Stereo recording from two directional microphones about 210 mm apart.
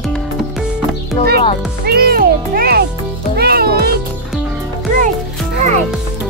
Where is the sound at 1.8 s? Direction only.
45° right (ahead or behind).